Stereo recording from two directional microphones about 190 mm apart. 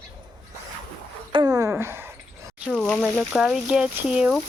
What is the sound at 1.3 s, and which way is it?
Dog, 20° right (ahead or behind).